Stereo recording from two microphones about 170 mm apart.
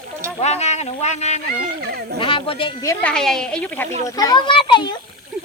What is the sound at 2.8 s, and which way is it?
Speech, 15° left (ahead or behind).